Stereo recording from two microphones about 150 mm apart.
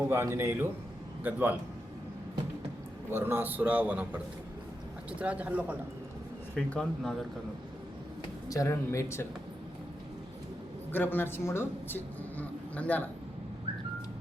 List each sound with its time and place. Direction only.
0.0 s a man's voice: 15° right (ahead or behind)
3.1 s a man's voice: 15° right (ahead or behind)
5.2 s a man's voice: 10° right (ahead or behind)
6.7 s speech: 5° left (ahead or behind)
8.4 s speech: 20° left (ahead or behind)
10.9 s speech: 15° left (ahead or behind)